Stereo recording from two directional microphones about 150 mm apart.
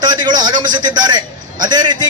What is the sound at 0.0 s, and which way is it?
A man's voice, 30° right (ahead or behind).